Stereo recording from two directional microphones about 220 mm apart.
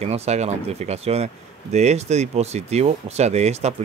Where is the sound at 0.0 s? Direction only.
30° right (ahead or behind).